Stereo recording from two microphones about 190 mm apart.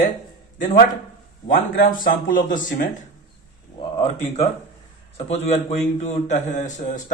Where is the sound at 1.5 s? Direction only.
45° left (ahead or behind).